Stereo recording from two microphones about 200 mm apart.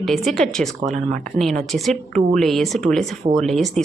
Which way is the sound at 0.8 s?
35° right (ahead or behind).